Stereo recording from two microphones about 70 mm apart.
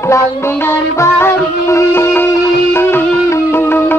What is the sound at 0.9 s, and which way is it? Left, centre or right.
Music, left.